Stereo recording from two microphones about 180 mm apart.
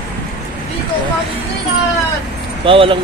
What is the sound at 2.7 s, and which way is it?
Speech, 30° right (ahead or behind).